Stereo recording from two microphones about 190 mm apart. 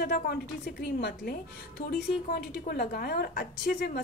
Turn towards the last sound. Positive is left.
turn(degrees=50)  # may be behind; listen again after turning